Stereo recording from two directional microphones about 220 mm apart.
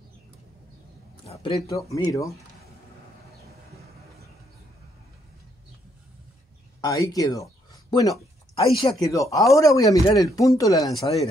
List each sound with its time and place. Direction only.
1.2 s a sound: 25° left (ahead or behind)
1.9 s speech: 15° left (ahead or behind)
6.8 s speech: 15° left (ahead or behind)